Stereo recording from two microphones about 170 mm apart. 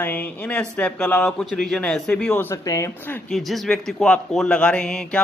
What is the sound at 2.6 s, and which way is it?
Speech, 20° left (ahead or behind).